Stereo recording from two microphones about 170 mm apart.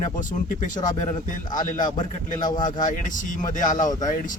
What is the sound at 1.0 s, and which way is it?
Speech, 45° left (ahead or behind).